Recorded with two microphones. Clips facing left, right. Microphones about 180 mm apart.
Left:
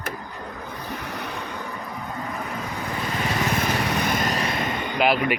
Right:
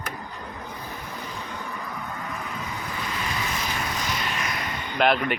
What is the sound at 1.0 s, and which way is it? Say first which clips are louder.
Vehicle: left 4 dB; 70° left (ahead or behind).